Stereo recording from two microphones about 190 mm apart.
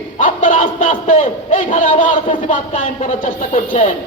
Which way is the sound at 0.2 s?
45° left (ahead or behind).